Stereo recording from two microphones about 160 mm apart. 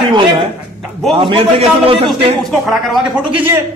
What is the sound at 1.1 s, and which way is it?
A man's voice, 35° right (ahead or behind).